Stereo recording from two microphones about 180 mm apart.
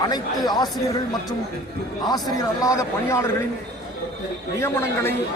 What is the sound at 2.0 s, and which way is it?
A man's voice, 20° left (ahead or behind).